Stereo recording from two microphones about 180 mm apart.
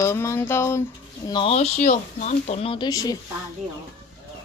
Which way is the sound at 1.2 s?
30° left (ahead or behind).